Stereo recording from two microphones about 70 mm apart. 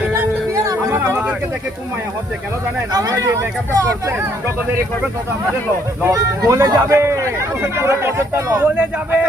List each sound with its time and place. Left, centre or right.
0.6 s a sound: right
0.9 s a sound: right
2.9 s speech: right
3.7 s speech: right
6.1 s speech: right
8.6 s speech: right